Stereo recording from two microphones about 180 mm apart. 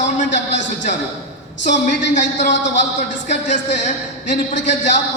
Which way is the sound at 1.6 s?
45° left (ahead or behind).